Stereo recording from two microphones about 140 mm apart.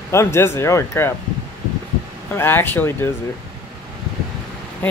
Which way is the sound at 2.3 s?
15° left (ahead or behind).